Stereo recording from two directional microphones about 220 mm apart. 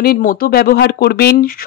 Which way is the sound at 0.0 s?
40° left (ahead or behind).